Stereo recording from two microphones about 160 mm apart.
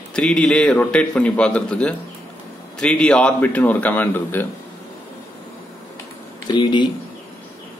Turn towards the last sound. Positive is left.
turn(degrees=30)  # may be behind; listen again after turning